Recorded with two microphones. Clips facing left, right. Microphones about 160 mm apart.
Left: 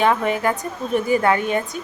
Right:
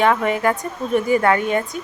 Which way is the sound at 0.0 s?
25° left (ahead or behind).